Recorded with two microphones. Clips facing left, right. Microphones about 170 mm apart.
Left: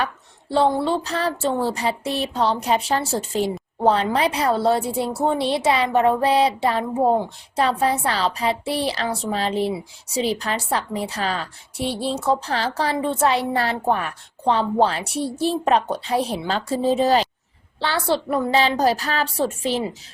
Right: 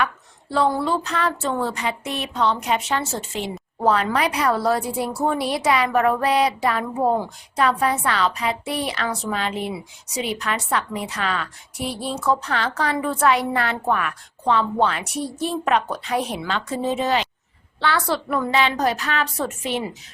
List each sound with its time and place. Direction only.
0.5 s a woman's voice: 30° left (ahead or behind)